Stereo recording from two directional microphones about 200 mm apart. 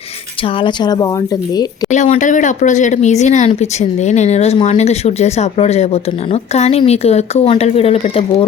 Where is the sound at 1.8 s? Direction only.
35° left (ahead or behind).